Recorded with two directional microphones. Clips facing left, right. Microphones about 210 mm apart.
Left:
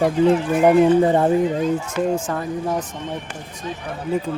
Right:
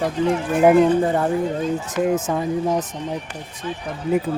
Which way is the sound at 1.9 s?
5° right (ahead or behind).